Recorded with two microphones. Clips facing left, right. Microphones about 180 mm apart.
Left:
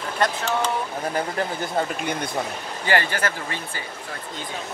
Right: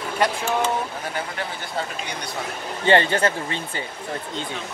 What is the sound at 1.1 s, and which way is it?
Speech, 45° left (ahead or behind).